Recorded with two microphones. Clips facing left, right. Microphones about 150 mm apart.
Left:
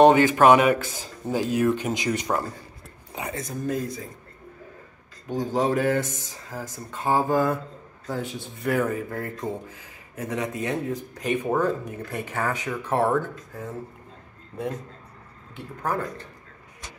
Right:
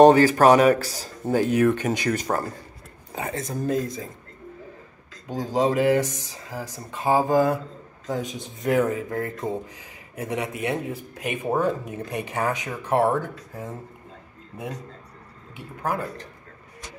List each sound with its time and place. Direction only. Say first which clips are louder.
0.0 s a man's voice: right 2 dB; 40° right (ahead or behind)
1.5 s speech: even; 65° right (ahead or behind); by 2.5 s 45° right (ahead or behind)
3.3 s speech: right 3 dB; 30° right (ahead or behind)
5.3 s speech: right 1 dB; 15° right (ahead or behind)
15.5 s speech: even; 10° right (ahead or behind)